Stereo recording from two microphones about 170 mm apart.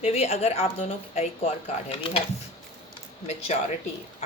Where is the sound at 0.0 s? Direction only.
35° left (ahead or behind).